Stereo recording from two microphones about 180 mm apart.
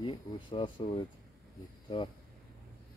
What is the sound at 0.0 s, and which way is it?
Speech, 30° left (ahead or behind).